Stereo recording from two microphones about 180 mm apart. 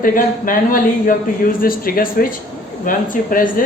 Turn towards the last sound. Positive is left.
turn(degrees=50)  # may be behind; listen again after turning